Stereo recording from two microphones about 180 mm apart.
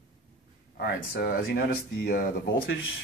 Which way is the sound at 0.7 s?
60° left (ahead or behind).